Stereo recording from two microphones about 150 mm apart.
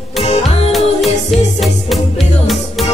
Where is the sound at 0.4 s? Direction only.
Centre (ahead or behind).